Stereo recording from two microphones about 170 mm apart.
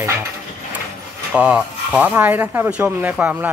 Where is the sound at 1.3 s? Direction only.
5° right (ahead or behind).